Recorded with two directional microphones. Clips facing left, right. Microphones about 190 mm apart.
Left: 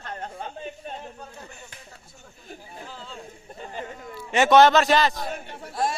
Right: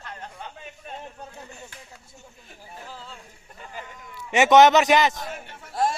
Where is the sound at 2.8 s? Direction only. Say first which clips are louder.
Right 2 dB; 5° right (ahead or behind).